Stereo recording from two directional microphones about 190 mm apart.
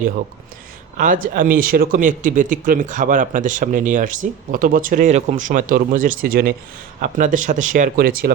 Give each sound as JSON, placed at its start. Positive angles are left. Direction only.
{"t": 0.9, "sound": "speech", "side_deg": -45}